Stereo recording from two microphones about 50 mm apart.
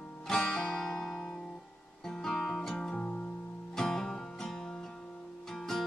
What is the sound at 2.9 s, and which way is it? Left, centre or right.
Music, left.